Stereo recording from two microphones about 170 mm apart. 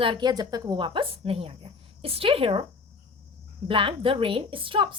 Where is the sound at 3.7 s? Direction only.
30° right (ahead or behind).